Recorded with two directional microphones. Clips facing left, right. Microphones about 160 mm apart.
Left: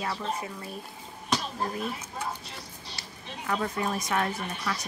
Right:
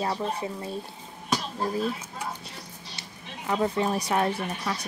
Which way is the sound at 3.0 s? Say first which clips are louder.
Left 1 dB; 20° right (ahead or behind).